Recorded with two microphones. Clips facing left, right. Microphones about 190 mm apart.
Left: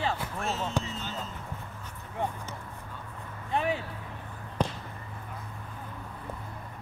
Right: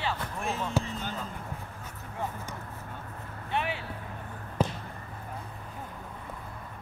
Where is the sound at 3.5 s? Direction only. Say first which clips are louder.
Left 3 dB; 35° left (ahead or behind).